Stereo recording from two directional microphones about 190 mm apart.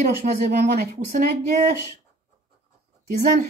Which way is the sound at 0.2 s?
40° right (ahead or behind).